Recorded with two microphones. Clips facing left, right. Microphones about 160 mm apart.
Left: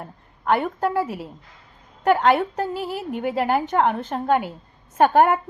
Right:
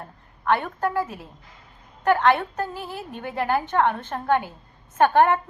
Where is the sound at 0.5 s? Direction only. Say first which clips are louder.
Left 2 dB; 15° left (ahead or behind).